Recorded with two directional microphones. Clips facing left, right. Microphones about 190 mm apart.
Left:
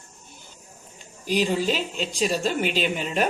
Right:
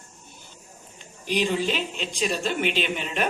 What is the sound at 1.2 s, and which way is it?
A woman's voice, 40° left (ahead or behind).